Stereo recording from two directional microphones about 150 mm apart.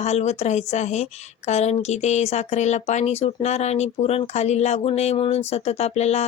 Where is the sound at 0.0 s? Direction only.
45° left (ahead or behind).